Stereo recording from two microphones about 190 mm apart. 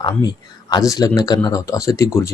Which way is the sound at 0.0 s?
20° left (ahead or behind).